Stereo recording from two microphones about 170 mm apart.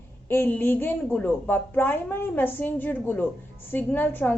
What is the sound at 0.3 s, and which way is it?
A woman's voice, 10° left (ahead or behind).